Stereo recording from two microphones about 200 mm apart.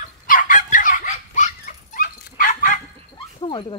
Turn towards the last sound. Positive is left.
turn(degrees=25)  # may be behind; listen again after turning